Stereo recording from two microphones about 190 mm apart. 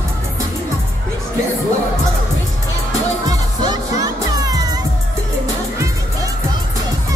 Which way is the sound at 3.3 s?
20° right (ahead or behind).